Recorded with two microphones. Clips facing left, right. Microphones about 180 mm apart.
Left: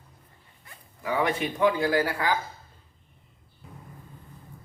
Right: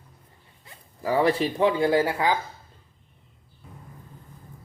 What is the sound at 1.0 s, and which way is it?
Speech, 35° right (ahead or behind).